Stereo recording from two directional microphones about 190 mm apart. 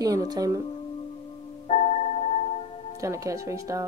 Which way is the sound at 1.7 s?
35° left (ahead or behind).